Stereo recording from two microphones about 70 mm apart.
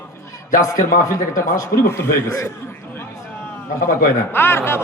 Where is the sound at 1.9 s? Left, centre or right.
Left.